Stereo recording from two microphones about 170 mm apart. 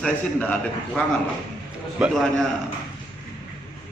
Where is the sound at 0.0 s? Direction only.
5° left (ahead or behind).